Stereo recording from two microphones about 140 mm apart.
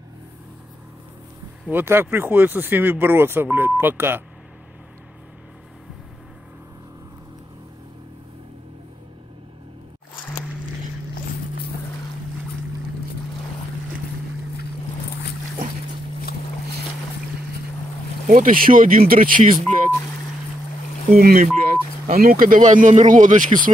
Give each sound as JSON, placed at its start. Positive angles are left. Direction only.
{"t": 1.7, "sound": "speech", "side_deg": -15}
{"t": 18.3, "sound": "speech", "side_deg": -70}
{"t": 21.1, "sound": "speech", "side_deg": -90}